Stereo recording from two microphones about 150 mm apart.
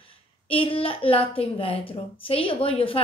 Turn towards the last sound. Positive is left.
turn(degrees=40)  # may be behind; listen again after turning